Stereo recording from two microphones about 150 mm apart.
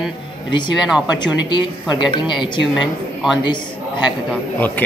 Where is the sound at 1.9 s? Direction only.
30° left (ahead or behind).